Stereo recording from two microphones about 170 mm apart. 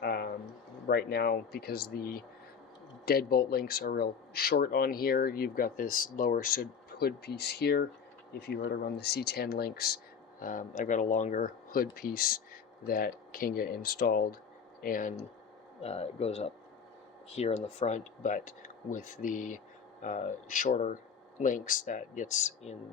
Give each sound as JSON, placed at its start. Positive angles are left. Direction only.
{"t": 0.0, "sound": "a sound", "side_deg": 70}
{"t": 0.9, "sound": "speech", "side_deg": 70}
{"t": 10.4, "sound": "speech", "side_deg": 50}
{"t": 15.8, "sound": "speech", "side_deg": 40}